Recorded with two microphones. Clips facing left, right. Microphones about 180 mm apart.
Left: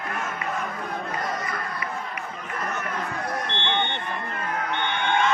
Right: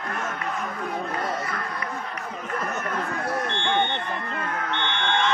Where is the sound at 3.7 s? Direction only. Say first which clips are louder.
Right 3 dB; 40° right (ahead or behind).